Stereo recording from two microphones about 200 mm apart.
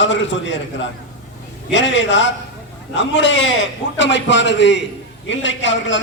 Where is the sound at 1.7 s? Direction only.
65° left (ahead or behind).